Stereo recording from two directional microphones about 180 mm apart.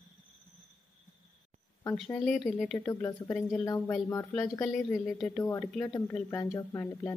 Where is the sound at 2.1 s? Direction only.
Centre (ahead or behind).